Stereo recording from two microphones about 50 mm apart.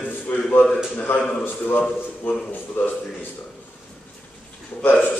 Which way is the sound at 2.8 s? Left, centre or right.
Left.